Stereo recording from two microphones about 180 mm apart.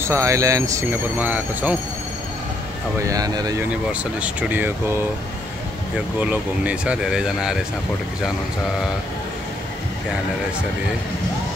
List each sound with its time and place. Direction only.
0.0 s speech: 15° right (ahead or behind)
3.0 s speech: 20° right (ahead or behind)
3.9 s speech: 5° right (ahead or behind)
6.2 s speech: 10° right (ahead or behind)